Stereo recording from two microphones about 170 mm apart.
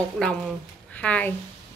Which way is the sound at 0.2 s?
5° left (ahead or behind).